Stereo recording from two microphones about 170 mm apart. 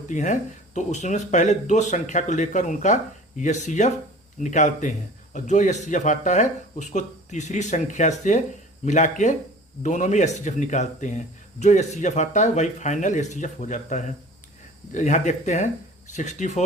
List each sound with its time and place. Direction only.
0.1 s speech: 45° left (ahead or behind)